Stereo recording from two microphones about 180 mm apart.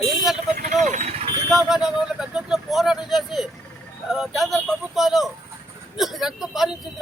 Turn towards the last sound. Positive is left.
turn(degrees=0)  # may be behind; listen again after turning